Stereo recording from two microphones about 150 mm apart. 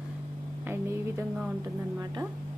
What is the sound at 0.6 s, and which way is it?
Speech, 15° right (ahead or behind).